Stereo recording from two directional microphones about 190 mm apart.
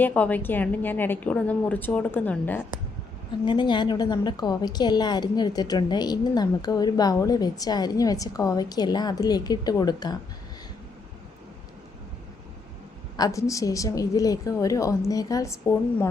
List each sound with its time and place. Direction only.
0.0 s a woman's voice: 10° left (ahead or behind)
3.4 s a woman's voice: 25° left (ahead or behind)
13.1 s a woman's voice: 20° left (ahead or behind)